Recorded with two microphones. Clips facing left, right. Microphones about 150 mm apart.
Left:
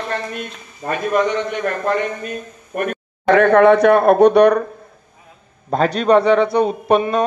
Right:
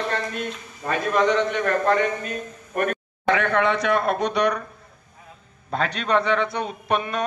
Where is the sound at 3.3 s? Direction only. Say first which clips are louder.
Left 10 dB; 55° left (ahead or behind).